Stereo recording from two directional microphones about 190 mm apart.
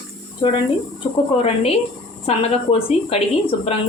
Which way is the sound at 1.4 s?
30° left (ahead or behind).